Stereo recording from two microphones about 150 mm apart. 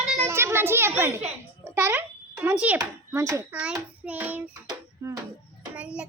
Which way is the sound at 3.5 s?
5° right (ahead or behind).